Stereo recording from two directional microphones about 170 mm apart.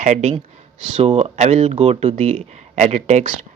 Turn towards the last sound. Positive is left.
turn(degrees=-45)  # may be behind; listen again after turning